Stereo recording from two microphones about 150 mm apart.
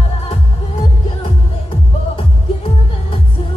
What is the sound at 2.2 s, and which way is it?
Music, 40° left (ahead or behind).